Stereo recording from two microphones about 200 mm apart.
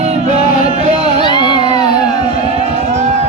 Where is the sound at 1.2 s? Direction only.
25° left (ahead or behind).